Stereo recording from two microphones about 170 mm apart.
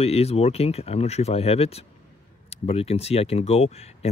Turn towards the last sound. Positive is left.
turn(degrees=40)  # may be behind; listen again after turning